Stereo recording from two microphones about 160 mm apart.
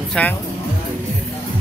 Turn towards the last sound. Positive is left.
turn(degrees=10)  # may be behind; listen again after turning